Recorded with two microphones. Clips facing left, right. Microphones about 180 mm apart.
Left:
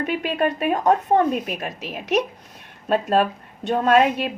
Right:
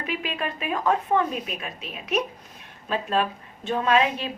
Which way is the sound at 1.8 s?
75° left (ahead or behind).